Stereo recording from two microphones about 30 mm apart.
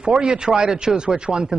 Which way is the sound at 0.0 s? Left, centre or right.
Right.